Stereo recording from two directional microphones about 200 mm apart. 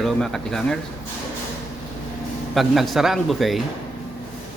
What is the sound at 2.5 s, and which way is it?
Speech, centre (ahead or behind).